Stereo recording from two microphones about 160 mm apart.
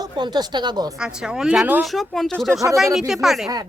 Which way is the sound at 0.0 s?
25° right (ahead or behind).